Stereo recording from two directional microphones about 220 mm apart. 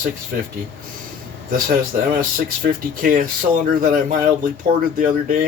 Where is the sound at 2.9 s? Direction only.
40° right (ahead or behind).